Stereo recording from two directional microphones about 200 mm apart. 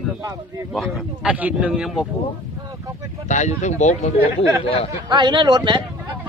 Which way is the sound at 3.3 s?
35° left (ahead or behind).